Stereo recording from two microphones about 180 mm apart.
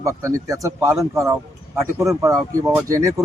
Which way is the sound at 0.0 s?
15° right (ahead or behind).